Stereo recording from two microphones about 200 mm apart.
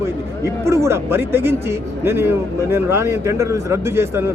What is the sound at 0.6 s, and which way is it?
A man's voice, 15° right (ahead or behind).